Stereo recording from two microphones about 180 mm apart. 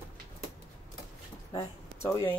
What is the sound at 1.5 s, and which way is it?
Speech, 15° left (ahead or behind).